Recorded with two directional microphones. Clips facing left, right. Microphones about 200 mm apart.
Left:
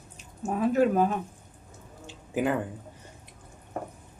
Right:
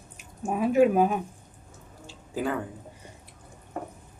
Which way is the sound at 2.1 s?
20° left (ahead or behind).